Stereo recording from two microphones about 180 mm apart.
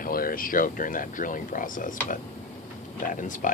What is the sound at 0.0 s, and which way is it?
Speech, 55° left (ahead or behind).